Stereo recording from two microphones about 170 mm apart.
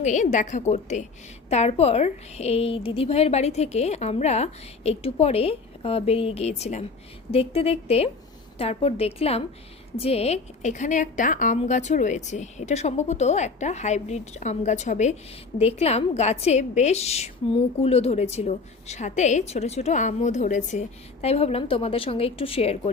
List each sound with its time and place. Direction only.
0.0 s a woman's voice: 45° left (ahead or behind)